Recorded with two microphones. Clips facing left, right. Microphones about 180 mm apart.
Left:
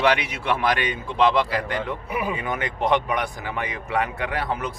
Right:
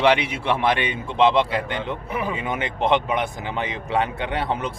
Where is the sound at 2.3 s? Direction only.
25° right (ahead or behind).